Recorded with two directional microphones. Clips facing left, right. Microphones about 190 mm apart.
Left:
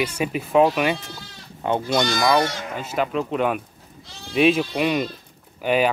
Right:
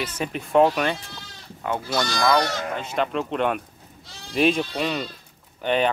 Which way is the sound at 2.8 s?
5° left (ahead or behind).